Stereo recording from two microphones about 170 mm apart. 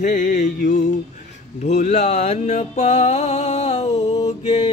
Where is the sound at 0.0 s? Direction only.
45° left (ahead or behind).